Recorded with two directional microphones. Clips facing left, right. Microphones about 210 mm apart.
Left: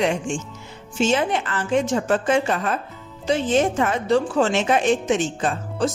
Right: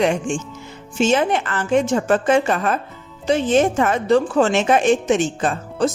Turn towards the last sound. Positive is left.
turn(degrees=-50)  # may be behind; listen again after turning